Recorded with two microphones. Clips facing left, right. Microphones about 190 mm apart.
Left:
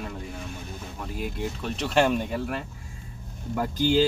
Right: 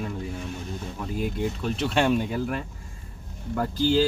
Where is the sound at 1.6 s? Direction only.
Centre (ahead or behind).